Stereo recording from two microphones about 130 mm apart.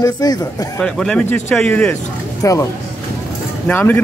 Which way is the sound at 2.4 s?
25° left (ahead or behind).